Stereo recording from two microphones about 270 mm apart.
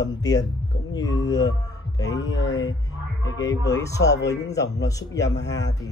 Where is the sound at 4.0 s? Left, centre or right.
Left.